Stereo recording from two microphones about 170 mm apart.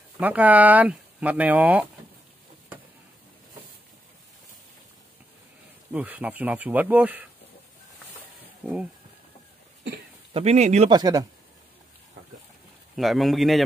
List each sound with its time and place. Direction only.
0.2 s speech: 10° right (ahead or behind)
5.9 s speech: 10° right (ahead or behind)
10.3 s speech: 40° right (ahead or behind)
10.9 s speech: 25° right (ahead or behind)
12.9 s a man's voice: centre (ahead or behind)